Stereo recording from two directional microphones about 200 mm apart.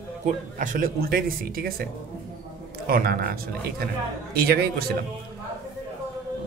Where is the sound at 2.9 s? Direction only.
50° right (ahead or behind).